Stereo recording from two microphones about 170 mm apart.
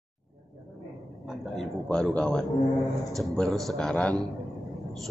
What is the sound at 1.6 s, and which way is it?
A man's voice, 5° left (ahead or behind).